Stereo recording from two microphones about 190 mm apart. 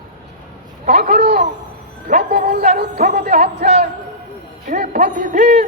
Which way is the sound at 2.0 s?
55° right (ahead or behind).